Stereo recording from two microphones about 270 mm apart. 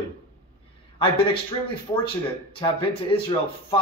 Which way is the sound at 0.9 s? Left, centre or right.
Centre.